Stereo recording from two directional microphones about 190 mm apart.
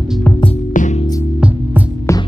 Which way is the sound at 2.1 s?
15° left (ahead or behind).